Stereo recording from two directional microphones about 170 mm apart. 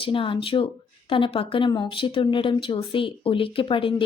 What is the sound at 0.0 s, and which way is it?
A woman's voice, 30° left (ahead or behind).